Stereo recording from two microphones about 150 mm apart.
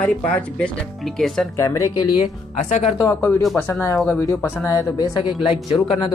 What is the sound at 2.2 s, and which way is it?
Speech, 50° left (ahead or behind).